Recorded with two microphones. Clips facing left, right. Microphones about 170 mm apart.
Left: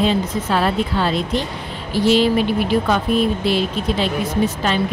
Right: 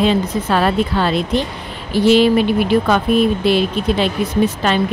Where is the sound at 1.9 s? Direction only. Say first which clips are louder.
Right 3 dB; 60° right (ahead or behind).